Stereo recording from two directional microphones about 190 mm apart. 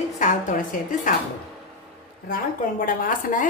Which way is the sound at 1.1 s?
45° left (ahead or behind).